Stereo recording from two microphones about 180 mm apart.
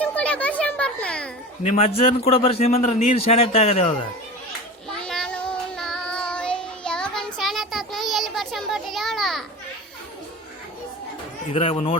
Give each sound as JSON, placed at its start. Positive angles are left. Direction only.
{"t": 0.0, "sound": "a sound", "side_deg": 5}
{"t": 1.6, "sound": "a man's voice", "side_deg": 35}
{"t": 4.9, "sound": "child singing", "side_deg": 5}
{"t": 11.5, "sound": "a man's voice", "side_deg": 30}